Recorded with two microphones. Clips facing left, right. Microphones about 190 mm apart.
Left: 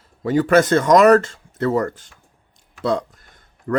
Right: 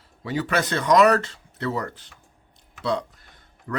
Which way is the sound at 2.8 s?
45° left (ahead or behind).